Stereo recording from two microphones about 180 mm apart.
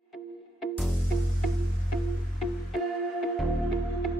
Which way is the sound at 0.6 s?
Centre (ahead or behind).